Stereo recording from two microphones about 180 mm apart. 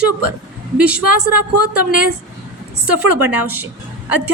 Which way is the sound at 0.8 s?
5° right (ahead or behind).